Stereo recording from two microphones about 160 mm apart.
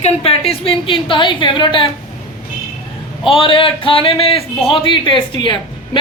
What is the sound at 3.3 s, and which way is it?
A woman's voice, 35° left (ahead or behind).